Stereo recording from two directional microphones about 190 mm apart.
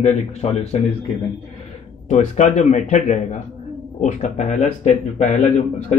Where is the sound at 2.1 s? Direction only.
40° left (ahead or behind).